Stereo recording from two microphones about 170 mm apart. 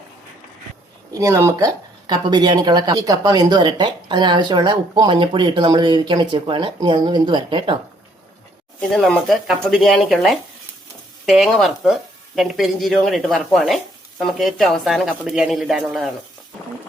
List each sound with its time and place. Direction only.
1.2 s speech: 20° right (ahead or behind)
8.8 s speech: 5° left (ahead or behind)